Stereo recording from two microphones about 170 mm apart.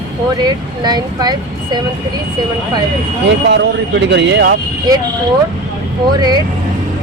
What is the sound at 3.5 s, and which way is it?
Speech, 90° right.